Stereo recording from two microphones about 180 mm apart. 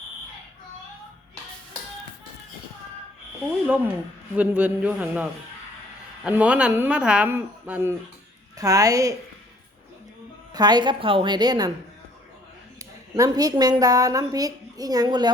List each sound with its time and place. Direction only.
4.4 s a woman's voice: 5° right (ahead or behind)
10.5 s a woman's voice: 25° right (ahead or behind)
12.8 s a woman's voice: 20° right (ahead or behind)